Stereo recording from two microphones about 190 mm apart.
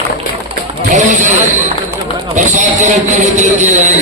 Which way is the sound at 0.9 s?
40° right (ahead or behind).